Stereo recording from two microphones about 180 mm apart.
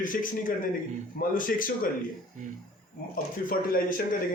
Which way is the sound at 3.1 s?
50° left (ahead or behind).